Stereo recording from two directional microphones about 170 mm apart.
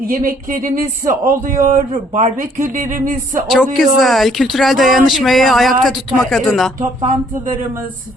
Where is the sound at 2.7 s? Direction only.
50° right (ahead or behind).